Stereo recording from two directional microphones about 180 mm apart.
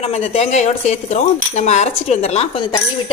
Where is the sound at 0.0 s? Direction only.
35° left (ahead or behind).